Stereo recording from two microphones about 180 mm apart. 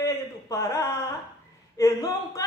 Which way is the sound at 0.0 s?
15° left (ahead or behind).